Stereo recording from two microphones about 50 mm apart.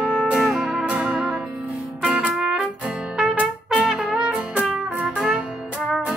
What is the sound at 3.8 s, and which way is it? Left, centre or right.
Trumpet, centre.